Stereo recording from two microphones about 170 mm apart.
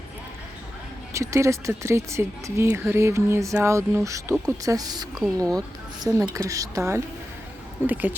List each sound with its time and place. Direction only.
1.1 s a woman's voice: 15° right (ahead or behind)